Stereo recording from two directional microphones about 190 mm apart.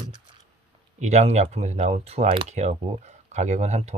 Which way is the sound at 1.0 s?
35° right (ahead or behind).